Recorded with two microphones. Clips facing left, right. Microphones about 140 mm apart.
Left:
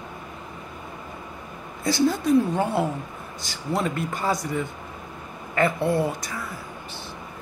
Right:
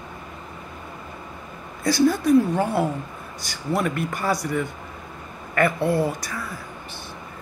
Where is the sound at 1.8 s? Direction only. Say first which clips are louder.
Right 3 dB; 20° left (ahead or behind).